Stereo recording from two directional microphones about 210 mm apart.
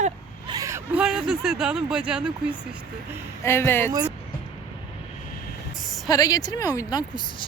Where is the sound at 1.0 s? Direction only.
Centre (ahead or behind).